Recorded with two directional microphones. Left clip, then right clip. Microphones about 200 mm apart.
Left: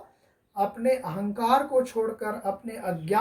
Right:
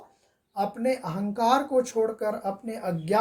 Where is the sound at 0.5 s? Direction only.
50° right (ahead or behind).